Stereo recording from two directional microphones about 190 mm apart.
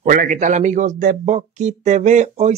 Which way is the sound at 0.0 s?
45° right (ahead or behind).